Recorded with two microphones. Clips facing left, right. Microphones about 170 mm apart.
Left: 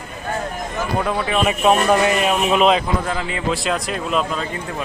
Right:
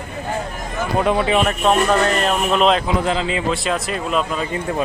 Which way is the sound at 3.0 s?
20° right (ahead or behind).